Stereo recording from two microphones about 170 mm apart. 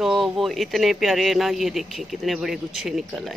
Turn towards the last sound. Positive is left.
turn(degrees=0)  # may be behind; listen again after turning